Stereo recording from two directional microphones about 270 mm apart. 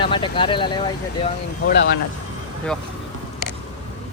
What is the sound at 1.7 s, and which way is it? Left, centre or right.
Speech, left.